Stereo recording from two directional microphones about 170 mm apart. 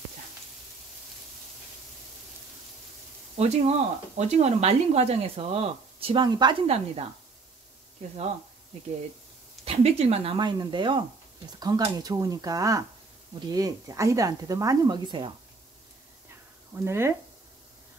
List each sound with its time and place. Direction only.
3.3 s speech: 40° right (ahead or behind)
9.7 s speech: 35° right (ahead or behind)
16.7 s speech: 15° right (ahead or behind)